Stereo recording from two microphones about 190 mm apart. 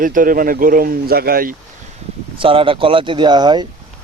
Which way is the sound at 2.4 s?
25° right (ahead or behind).